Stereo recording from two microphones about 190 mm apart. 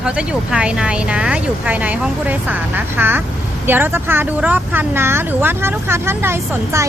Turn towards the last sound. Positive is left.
turn(degrees=-15)  # may be behind; listen again after turning